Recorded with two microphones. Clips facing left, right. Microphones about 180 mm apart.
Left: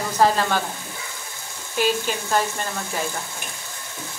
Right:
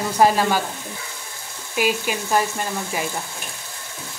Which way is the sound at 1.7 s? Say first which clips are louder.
Even; 10° right (ahead or behind).